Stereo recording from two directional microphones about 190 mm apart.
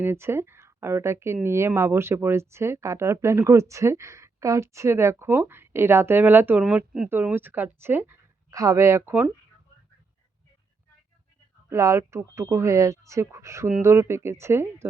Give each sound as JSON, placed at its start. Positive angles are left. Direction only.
{"t": 0.0, "sound": "speech", "side_deg": -10}
{"t": 11.7, "sound": "speech", "side_deg": -15}